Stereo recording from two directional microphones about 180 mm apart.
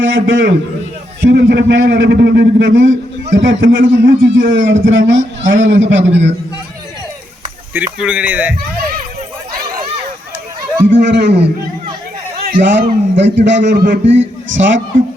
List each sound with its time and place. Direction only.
0.0 s a man's voice: 90° right
1.2 s a man's voice: 65° right (ahead or behind); by 4.0 s 90° right
4.0 s a man's voice: 50° right (ahead or behind)
4.5 s a man's voice: 90° right
7.9 s speech: 5° right (ahead or behind)
10.8 s a man's voice: 75° right (ahead or behind)
12.4 s a man's voice: 60° right (ahead or behind); by 14.8 s 90° right